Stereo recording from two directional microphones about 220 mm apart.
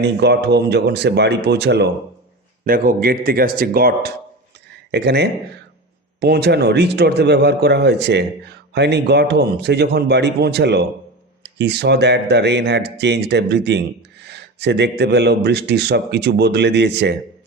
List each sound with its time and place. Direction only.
0.0 s a man's voice: 50° right (ahead or behind)